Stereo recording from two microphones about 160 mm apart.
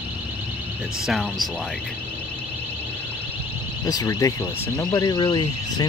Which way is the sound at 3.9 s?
20° left (ahead or behind).